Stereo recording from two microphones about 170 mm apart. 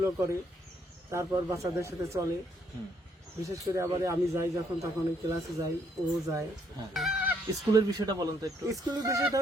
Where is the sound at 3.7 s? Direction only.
20° right (ahead or behind).